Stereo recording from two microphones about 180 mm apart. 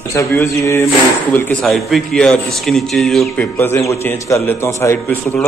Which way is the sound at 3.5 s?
10° left (ahead or behind).